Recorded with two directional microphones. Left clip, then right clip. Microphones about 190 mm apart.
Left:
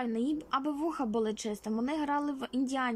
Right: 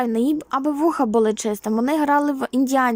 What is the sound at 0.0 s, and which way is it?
A woman's voice, 25° right (ahead or behind).